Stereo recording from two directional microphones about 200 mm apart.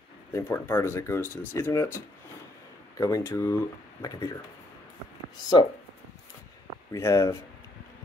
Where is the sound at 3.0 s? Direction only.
15° left (ahead or behind).